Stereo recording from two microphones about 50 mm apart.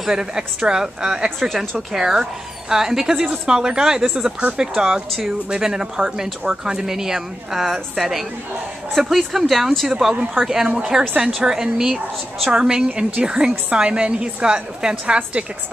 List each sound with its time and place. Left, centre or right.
0.0 s a woman's voice: centre